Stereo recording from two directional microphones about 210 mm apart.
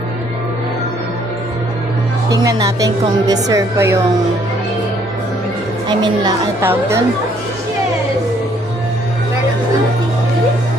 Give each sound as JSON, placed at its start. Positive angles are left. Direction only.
{"t": 2.3, "sound": "a woman's voice", "side_deg": -15}
{"t": 5.9, "sound": "a woman's voice", "side_deg": -20}